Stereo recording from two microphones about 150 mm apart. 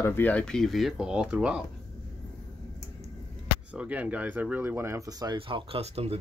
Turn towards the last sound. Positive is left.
turn(degrees=-40)  # may be behind; listen again after turning